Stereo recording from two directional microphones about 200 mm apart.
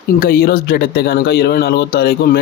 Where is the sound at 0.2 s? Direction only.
50° left (ahead or behind).